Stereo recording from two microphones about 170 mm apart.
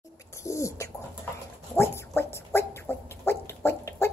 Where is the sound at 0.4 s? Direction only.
15° left (ahead or behind).